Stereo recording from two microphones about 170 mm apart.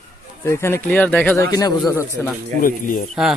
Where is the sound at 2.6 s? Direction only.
55° left (ahead or behind).